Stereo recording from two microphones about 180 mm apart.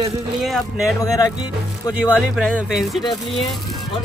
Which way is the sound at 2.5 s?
5° right (ahead or behind).